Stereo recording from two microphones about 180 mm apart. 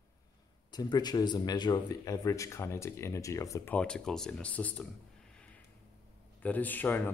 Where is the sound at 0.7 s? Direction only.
25° left (ahead or behind); by 4.8 s 10° left (ahead or behind).